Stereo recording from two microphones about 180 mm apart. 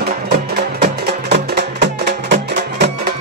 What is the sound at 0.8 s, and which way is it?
Music, 70° right (ahead or behind).